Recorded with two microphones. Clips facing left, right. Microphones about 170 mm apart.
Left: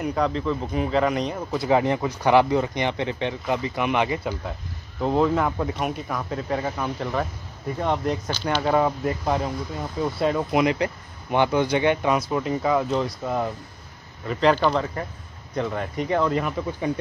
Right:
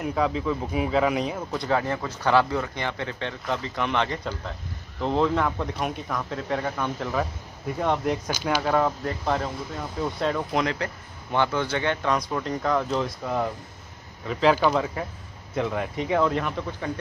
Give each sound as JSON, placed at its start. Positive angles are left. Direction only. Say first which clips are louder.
{"t": 0.0, "sound": "speech", "louder": "left 1 dB", "side_deg": 0}
{"t": 1.7, "sound": "speech", "louder": "left 5 dB", "side_deg": 20}
{"t": 8.7, "sound": "speech", "louder": "left 2 dB", "side_deg": 5}